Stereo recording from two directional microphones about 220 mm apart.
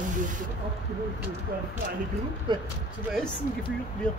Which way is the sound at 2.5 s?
20° right (ahead or behind).